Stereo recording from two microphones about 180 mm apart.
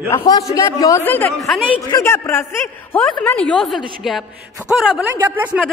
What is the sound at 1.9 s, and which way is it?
A woman's voice, 15° left (ahead or behind).